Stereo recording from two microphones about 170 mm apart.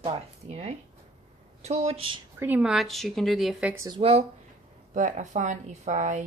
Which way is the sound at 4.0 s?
35° right (ahead or behind).